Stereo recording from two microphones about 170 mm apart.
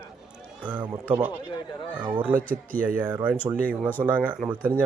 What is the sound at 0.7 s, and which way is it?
Speech, 10° right (ahead or behind).